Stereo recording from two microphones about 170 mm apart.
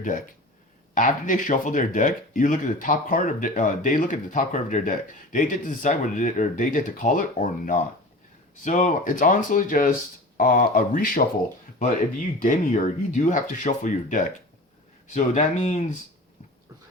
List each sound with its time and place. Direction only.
0.9 s speech: 50° left (ahead or behind)